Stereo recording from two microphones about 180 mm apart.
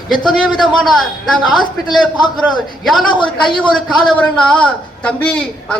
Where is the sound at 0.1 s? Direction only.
Centre (ahead or behind).